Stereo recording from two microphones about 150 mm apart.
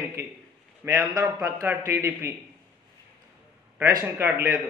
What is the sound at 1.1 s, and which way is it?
Speech, 20° right (ahead or behind).